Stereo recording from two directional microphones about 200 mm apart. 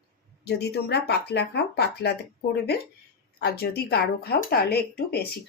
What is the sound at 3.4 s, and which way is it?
Speech, 50° left (ahead or behind).